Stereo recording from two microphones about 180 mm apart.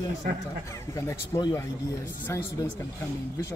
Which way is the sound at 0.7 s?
15° left (ahead or behind).